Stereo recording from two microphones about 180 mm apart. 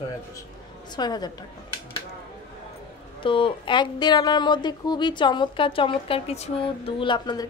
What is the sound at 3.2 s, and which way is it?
Speech, 30° left (ahead or behind).